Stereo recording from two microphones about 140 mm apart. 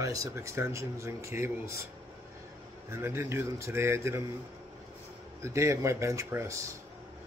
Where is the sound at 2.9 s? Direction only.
15° right (ahead or behind).